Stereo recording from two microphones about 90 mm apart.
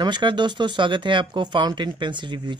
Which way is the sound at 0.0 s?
60° right (ahead or behind).